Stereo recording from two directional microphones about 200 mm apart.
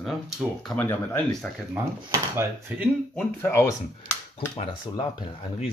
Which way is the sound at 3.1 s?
10° left (ahead or behind).